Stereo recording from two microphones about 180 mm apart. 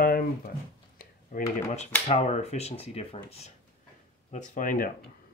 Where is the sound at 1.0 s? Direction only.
45° left (ahead or behind).